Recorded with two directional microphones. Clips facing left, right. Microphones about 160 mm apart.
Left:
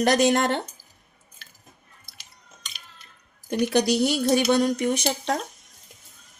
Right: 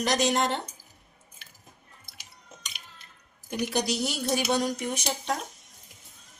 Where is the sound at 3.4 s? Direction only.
65° left (ahead or behind).